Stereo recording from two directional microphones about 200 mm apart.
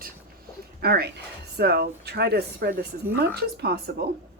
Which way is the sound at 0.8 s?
55° right (ahead or behind).